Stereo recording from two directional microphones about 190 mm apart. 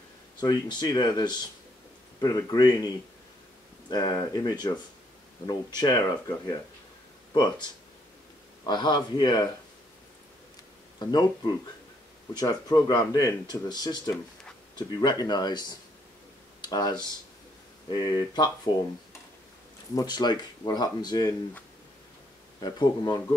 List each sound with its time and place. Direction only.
0.4 s speech: 20° left (ahead or behind)
3.9 s speech: 20° left (ahead or behind)
8.6 s speech: 25° left (ahead or behind)
11.0 s speech: 20° left (ahead or behind)
12.4 s speech: 20° left (ahead or behind)
20.0 s speech: 20° left (ahead or behind)
22.6 s speech: 20° left (ahead or behind)